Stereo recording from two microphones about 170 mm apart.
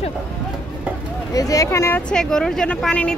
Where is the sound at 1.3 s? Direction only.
20° left (ahead or behind); by 3.1 s 5° left (ahead or behind).